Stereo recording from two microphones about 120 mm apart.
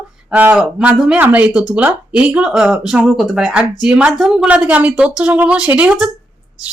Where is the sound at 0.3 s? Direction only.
10° right (ahead or behind).